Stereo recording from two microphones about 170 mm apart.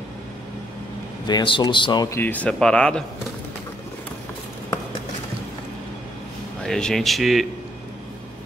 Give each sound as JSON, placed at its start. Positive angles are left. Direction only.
{"t": 1.2, "sound": "speech", "side_deg": 25}
{"t": 6.6, "sound": "a man's voice", "side_deg": 5}